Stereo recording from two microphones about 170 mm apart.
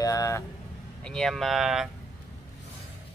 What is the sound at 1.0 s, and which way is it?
Speech, 5° left (ahead or behind).